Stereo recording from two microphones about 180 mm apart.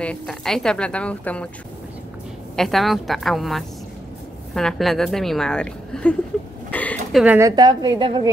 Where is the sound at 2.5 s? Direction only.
Centre (ahead or behind).